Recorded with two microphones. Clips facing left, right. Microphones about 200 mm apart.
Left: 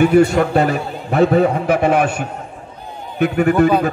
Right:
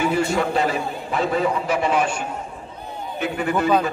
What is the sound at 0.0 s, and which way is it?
A man's voice, 65° left (ahead or behind).